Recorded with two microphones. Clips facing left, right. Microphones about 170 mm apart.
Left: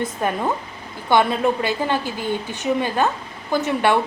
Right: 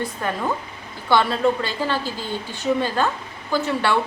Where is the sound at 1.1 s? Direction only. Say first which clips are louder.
Left 1 dB; 15° left (ahead or behind).